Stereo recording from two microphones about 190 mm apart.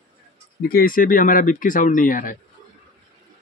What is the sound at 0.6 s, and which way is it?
Speech, 50° left (ahead or behind).